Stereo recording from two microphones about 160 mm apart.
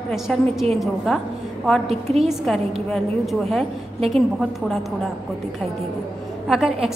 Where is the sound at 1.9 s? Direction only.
40° right (ahead or behind).